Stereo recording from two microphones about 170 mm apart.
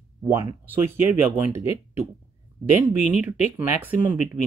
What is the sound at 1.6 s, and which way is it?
Speech, 35° left (ahead or behind).